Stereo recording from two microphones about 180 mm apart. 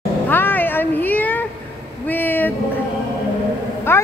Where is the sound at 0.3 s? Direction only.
10° left (ahead or behind).